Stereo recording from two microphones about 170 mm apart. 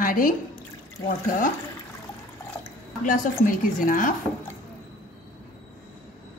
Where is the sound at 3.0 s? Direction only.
50° left (ahead or behind).